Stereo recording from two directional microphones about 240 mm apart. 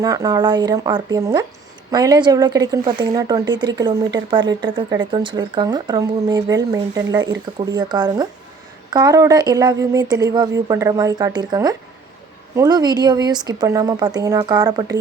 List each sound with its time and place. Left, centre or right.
0.0 s speech: centre